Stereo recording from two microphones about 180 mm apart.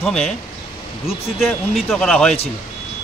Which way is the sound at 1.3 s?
Centre (ahead or behind).